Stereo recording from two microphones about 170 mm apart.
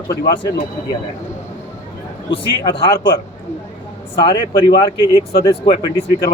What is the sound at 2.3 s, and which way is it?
Speech, 30° left (ahead or behind).